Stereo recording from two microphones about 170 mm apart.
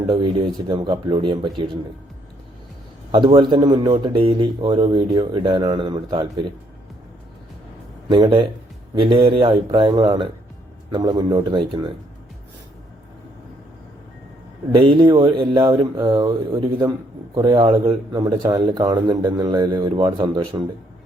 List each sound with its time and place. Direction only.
0.1 s speech: 30° right (ahead or behind)
3.1 s speech: 30° right (ahead or behind)
8.1 s speech: 25° right (ahead or behind)
14.7 s speech: 30° right (ahead or behind)